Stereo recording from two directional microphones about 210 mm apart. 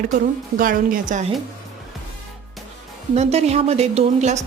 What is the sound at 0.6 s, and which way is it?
Speech, 40° right (ahead or behind).